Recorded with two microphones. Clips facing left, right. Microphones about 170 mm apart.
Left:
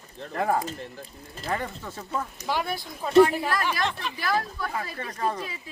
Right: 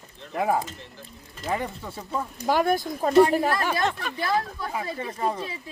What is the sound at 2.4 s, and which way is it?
Speech, 45° right (ahead or behind).